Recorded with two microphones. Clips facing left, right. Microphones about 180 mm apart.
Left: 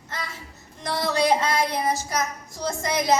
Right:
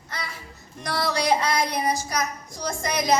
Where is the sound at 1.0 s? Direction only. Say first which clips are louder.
Left 2 dB; 15° right (ahead or behind).